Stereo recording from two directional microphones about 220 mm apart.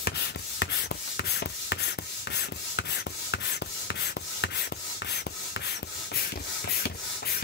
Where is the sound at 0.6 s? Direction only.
50° left (ahead or behind).